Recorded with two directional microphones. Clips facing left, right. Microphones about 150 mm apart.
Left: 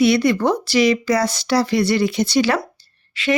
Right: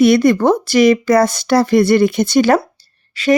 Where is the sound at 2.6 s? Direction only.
40° right (ahead or behind).